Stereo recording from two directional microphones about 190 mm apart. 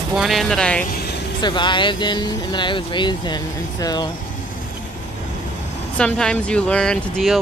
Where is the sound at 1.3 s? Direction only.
25° left (ahead or behind).